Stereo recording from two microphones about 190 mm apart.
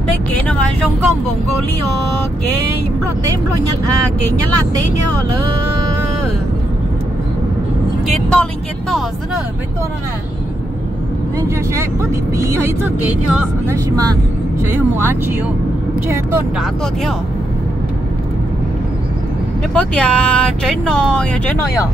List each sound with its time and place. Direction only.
8.1 s speech: 5° left (ahead or behind)
11.3 s speech: 15° right (ahead or behind)
13.8 s speech: 20° right (ahead or behind)
19.7 s speech: 5° left (ahead or behind)